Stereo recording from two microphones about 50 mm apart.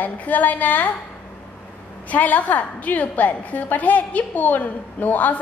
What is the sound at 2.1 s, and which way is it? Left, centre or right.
A woman's voice, left.